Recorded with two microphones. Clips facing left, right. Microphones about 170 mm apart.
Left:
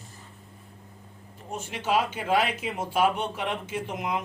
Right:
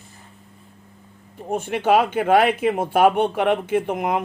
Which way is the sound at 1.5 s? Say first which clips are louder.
Right 9 dB; 60° right (ahead or behind).